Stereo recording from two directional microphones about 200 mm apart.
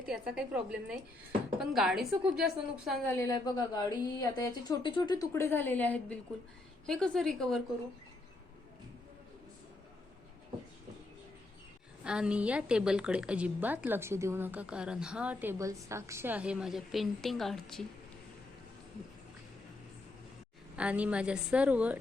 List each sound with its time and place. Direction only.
0.0 s a woman's voice: 5° right (ahead or behind)
3.1 s a woman's voice: 15° left (ahead or behind)
12.0 s a woman's voice: 5° right (ahead or behind)
20.7 s a woman's voice: 5° right (ahead or behind)